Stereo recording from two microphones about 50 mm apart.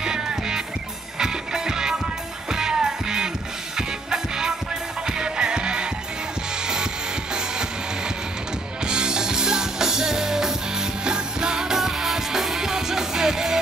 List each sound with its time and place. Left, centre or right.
0.0 s music: centre
8.8 s music: centre